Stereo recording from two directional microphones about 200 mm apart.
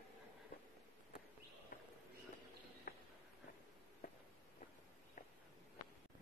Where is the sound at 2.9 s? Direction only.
45° left (ahead or behind).